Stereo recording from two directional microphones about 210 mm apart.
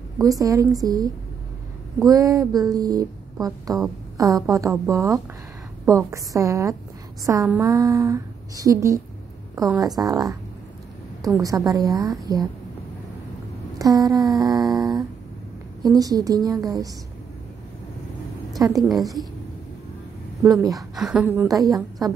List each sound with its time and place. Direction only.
0.2 s speech: 15° right (ahead or behind)
13.7 s speech: 15° right (ahead or behind)
18.8 s a woman's voice: centre (ahead or behind)
20.7 s speech: centre (ahead or behind); by 21.8 s 15° right (ahead or behind)